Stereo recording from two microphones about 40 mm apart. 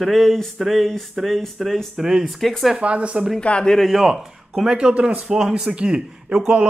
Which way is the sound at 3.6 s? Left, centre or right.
Centre.